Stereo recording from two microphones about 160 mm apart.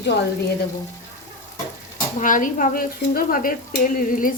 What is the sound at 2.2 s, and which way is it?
Speech, 55° left (ahead or behind).